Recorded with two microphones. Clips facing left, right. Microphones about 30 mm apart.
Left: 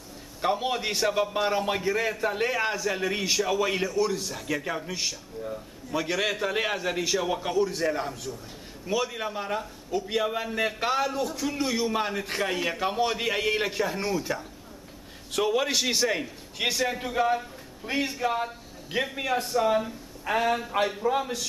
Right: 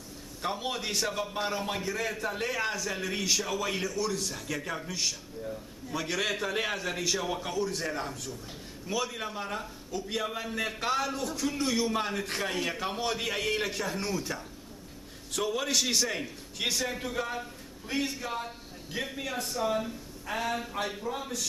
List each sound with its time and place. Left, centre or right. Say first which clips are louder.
0.4 s a man's voice: left 6 dB; centre
19.1 s speech: left 9 dB; left
21.0 s a man's voice: left 10 dB; left